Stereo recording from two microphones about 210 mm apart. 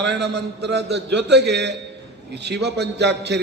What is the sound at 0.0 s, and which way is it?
A man's voice, 55° right (ahead or behind).